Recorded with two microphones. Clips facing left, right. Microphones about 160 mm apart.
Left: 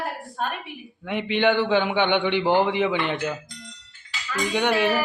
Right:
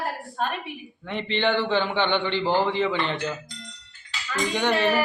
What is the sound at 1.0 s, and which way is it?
A man's voice, 10° left (ahead or behind).